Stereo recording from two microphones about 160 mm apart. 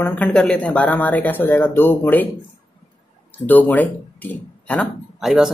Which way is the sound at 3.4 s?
10° left (ahead or behind).